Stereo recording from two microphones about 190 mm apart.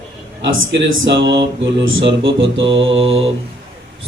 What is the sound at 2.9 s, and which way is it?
Mantra, 30° right (ahead or behind).